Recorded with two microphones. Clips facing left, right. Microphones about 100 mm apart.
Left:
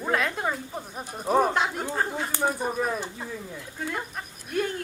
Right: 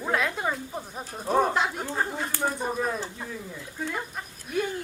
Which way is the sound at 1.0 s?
10° left (ahead or behind).